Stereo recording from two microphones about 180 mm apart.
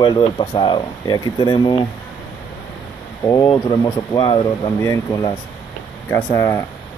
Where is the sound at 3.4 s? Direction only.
20° left (ahead or behind).